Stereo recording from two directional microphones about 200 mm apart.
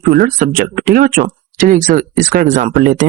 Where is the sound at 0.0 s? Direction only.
45° right (ahead or behind).